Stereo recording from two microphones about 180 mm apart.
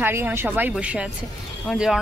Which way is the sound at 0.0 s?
15° right (ahead or behind).